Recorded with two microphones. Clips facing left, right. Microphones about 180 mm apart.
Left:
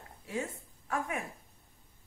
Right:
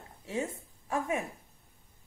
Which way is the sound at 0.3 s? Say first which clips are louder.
Right 3 dB; 25° right (ahead or behind).